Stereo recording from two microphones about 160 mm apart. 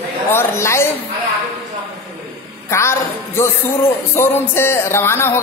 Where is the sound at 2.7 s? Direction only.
15° left (ahead or behind).